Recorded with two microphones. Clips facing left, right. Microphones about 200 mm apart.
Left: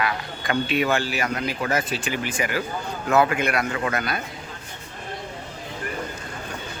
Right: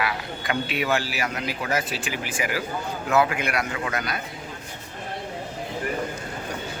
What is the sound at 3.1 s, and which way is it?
A man's voice, 50° left (ahead or behind).